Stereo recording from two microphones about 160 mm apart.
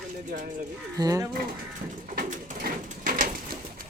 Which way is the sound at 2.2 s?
55° right (ahead or behind).